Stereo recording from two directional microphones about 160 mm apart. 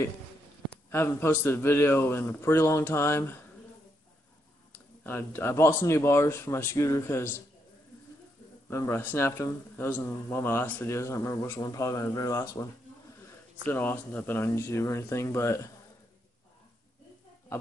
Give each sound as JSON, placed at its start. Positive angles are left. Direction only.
{"t": 0.8, "sound": "a man's voice", "side_deg": 15}
{"t": 4.7, "sound": "a man's voice", "side_deg": 10}
{"t": 8.6, "sound": "a man's voice", "side_deg": 15}
{"t": 13.7, "sound": "a man's voice", "side_deg": 10}